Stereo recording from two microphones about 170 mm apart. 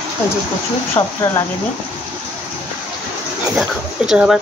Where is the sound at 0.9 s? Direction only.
15° left (ahead or behind).